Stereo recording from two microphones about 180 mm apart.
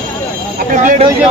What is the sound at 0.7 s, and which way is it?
Speech, 45° right (ahead or behind).